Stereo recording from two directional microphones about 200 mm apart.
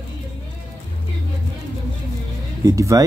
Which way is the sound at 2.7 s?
15° right (ahead or behind).